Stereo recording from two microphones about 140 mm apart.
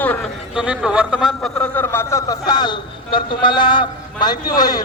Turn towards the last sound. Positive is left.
turn(degrees=30)  # may be behind; listen again after turning